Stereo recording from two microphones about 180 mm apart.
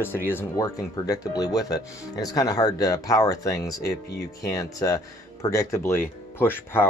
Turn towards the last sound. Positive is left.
turn(degrees=10)  # may be behind; listen again after turning